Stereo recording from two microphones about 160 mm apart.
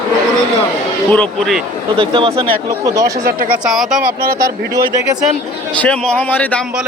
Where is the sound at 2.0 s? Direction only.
30° right (ahead or behind).